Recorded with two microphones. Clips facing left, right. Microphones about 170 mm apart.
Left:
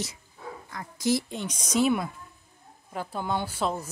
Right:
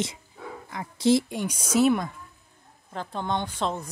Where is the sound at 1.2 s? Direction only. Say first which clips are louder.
Right 4 dB; 10° right (ahead or behind).